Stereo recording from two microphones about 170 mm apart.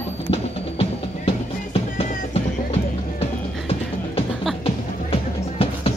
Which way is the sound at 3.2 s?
35° left (ahead or behind).